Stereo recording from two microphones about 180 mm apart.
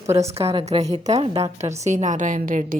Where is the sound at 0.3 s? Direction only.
35° right (ahead or behind).